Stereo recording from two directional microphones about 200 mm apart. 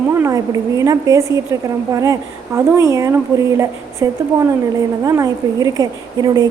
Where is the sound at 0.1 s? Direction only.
15° right (ahead or behind).